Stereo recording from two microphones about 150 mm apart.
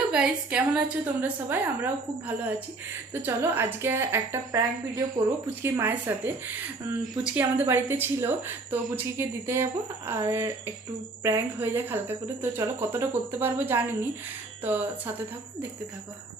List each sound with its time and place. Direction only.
0.1 s a woman's voice: 5° right (ahead or behind); by 5.2 s 25° right (ahead or behind)
5.6 s a woman's voice: 15° right (ahead or behind)
7.3 s a woman's voice: 15° right (ahead or behind)